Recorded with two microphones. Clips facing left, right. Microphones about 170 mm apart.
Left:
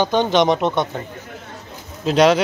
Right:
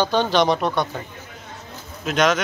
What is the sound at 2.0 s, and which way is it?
Speech, 30° left (ahead or behind).